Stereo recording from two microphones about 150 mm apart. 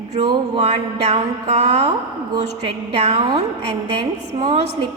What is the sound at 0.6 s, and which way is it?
Speech, 45° right (ahead or behind).